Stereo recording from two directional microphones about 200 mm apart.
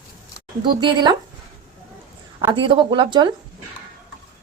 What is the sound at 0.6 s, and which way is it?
Speech, 25° right (ahead or behind).